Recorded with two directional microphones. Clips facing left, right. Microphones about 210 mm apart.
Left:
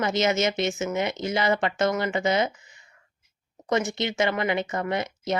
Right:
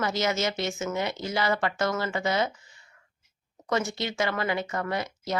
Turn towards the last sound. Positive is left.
turn(degrees=20)  # may be behind; listen again after turning